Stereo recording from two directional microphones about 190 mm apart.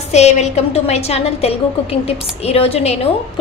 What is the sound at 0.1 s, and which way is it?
A woman's voice, 35° left (ahead or behind).